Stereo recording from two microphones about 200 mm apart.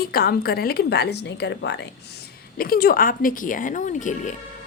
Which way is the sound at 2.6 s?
45° left (ahead or behind).